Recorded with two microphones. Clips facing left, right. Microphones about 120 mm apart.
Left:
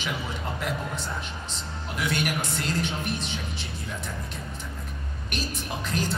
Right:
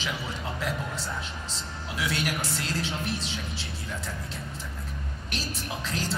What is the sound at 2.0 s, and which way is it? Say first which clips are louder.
Speech: left 2 dB; centre (ahead or behind).